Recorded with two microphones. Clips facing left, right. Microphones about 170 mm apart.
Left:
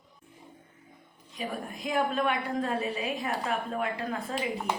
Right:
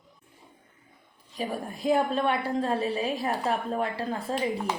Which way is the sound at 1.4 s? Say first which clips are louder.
Right 4 dB; 30° right (ahead or behind).